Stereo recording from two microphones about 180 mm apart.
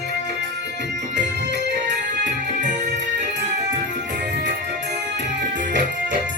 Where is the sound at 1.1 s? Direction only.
75° right (ahead or behind).